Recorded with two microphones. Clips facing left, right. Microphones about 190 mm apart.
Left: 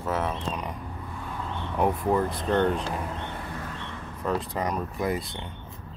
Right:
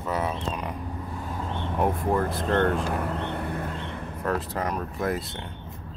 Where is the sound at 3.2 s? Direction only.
60° right (ahead or behind).